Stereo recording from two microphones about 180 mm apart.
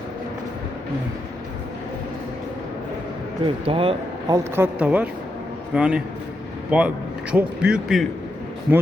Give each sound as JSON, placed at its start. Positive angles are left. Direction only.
{"t": 3.4, "sound": "speech", "side_deg": -30}
{"t": 4.5, "sound": "a man's voice", "side_deg": -10}